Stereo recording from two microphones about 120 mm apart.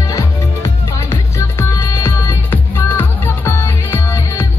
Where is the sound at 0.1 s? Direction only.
25° left (ahead or behind).